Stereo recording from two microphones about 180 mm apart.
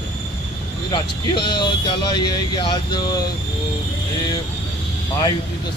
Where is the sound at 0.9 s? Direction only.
25° left (ahead or behind).